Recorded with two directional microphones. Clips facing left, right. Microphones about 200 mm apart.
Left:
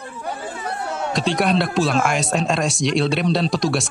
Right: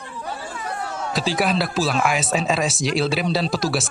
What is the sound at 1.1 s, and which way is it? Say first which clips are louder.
Speech: left 2 dB; centre (ahead or behind).